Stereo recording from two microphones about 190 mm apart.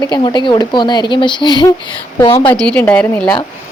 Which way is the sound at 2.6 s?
5° left (ahead or behind).